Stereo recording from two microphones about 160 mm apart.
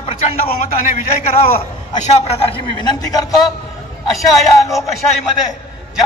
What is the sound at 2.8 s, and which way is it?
Speech, 25° left (ahead or behind).